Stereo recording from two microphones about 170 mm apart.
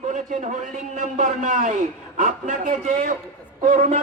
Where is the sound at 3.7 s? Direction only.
50° right (ahead or behind).